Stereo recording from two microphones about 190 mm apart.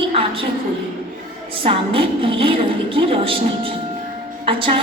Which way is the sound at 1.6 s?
30° right (ahead or behind).